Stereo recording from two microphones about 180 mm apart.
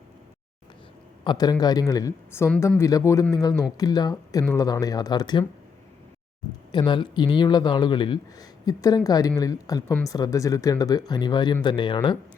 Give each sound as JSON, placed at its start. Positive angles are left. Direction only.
{"t": 1.2, "sound": "speech", "side_deg": 25}
{"t": 6.7, "sound": "speech", "side_deg": 25}